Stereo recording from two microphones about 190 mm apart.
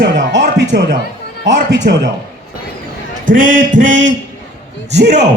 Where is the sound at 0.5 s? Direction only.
65° right (ahead or behind).